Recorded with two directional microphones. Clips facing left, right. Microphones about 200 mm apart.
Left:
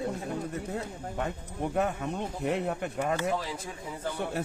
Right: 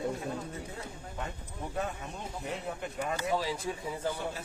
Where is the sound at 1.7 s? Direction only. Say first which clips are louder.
Left 7 dB; 60° left (ahead or behind).